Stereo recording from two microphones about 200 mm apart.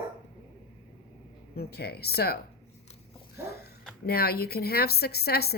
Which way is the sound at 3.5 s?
50° left (ahead or behind).